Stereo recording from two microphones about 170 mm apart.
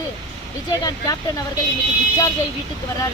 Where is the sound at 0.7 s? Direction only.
20° left (ahead or behind).